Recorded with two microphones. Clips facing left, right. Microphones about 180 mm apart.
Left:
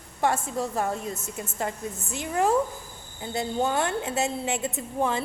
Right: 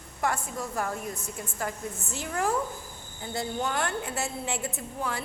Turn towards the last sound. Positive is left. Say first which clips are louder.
# left 7 dB
turn(degrees=20)  # may be behind; listen again after turning